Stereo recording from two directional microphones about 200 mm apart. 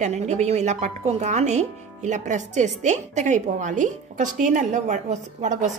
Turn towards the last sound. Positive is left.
turn(degrees=-35)  # may be behind; listen again after turning